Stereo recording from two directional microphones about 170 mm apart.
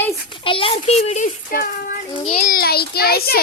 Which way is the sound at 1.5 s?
55° left (ahead or behind).